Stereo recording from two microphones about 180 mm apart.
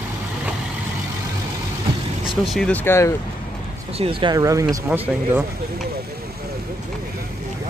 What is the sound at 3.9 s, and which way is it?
Speech, 30° right (ahead or behind).